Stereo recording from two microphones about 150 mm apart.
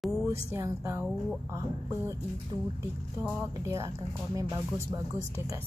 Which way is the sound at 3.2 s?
20° right (ahead or behind).